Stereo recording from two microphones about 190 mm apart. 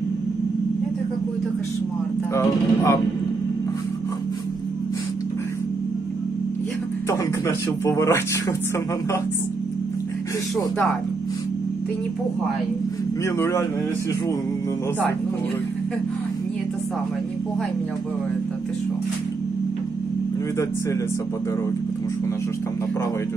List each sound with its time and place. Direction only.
2.3 s speech: 15° left (ahead or behind)
7.1 s speech: 15° left (ahead or behind)
13.4 s speech: 15° left (ahead or behind)